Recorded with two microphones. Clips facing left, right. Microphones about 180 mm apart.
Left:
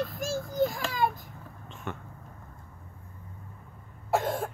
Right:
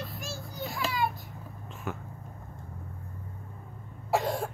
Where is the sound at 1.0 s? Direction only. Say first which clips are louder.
Left 5 dB; 45° left (ahead or behind).